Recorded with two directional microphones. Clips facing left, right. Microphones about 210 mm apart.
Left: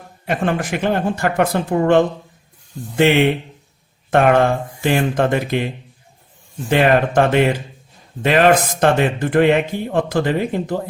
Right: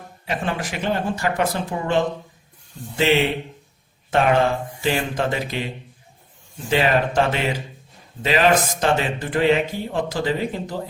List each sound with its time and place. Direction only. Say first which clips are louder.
0.3 s speech: left 6 dB; 50° left (ahead or behind)
4.1 s speech: left 4 dB; 55° left (ahead or behind)